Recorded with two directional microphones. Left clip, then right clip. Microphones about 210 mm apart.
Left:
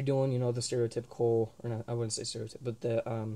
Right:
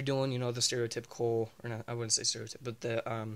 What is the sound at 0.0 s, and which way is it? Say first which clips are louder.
Speech: left 2 dB; 15° right (ahead or behind).